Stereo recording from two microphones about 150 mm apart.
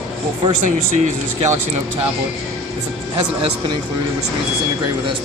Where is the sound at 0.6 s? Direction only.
50° right (ahead or behind).